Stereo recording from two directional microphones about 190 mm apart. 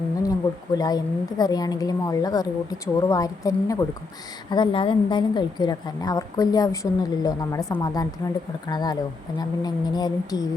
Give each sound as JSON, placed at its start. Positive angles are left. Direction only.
{"t": 0.2, "sound": "a woman's voice", "side_deg": 20}